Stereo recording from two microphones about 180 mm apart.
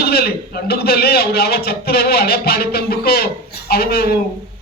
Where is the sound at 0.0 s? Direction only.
60° left (ahead or behind).